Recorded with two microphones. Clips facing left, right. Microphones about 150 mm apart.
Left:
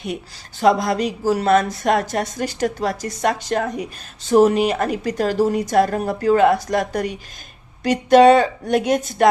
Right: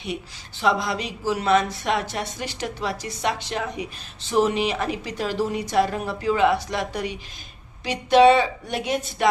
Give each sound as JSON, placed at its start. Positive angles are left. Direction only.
{"t": 0.6, "sound": "a woman's voice", "side_deg": 45}